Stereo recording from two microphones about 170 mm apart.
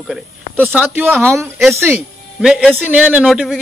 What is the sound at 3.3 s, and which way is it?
Speech, centre (ahead or behind).